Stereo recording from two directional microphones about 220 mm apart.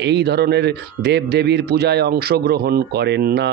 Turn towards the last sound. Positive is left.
turn(degrees=-50)  # may be behind; listen again after turning